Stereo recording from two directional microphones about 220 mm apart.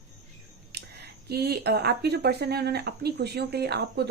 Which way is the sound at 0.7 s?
50° right (ahead or behind).